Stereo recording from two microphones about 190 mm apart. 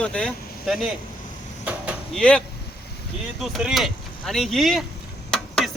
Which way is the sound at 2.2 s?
5° left (ahead or behind).